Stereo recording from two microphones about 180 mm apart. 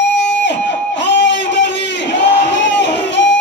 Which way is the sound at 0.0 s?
80° left.